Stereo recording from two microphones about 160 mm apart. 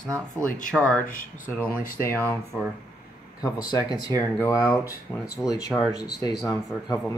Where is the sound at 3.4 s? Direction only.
25° left (ahead or behind).